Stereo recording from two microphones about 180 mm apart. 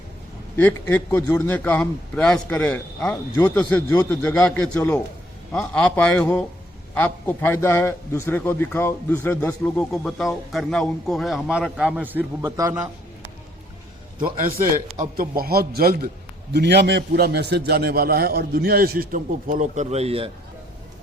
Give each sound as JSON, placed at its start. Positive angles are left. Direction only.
{"t": 0.5, "sound": "a man's voice", "side_deg": 10}
{"t": 12.4, "sound": "a man's voice", "side_deg": -20}
{"t": 14.9, "sound": "a man's voice", "side_deg": -50}
{"t": 16.5, "sound": "a man's voice", "side_deg": -70}